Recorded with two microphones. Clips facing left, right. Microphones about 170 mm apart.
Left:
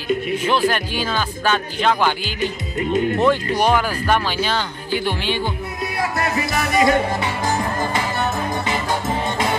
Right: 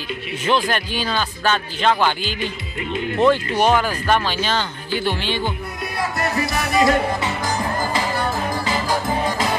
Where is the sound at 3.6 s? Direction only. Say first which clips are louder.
Even; 10° left (ahead or behind).